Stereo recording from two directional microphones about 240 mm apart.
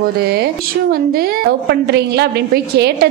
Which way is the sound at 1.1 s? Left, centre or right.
Right.